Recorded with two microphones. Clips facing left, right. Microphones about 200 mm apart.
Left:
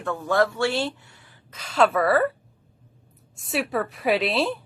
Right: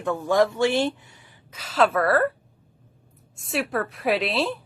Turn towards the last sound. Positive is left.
turn(degrees=0)  # may be behind; listen again after turning